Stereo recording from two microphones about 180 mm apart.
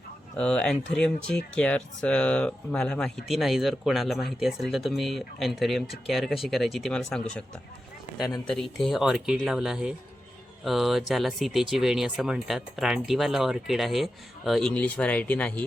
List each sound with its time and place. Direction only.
0.3 s speech: 5° left (ahead or behind)
8.4 s speech: centre (ahead or behind)